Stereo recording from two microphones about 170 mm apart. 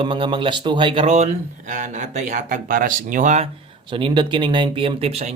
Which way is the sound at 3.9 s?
30° right (ahead or behind).